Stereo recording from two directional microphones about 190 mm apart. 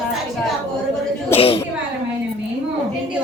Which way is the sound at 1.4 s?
30° left (ahead or behind).